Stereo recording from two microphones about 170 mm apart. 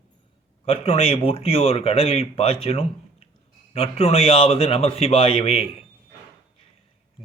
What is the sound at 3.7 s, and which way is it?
A man's voice, 35° left (ahead or behind).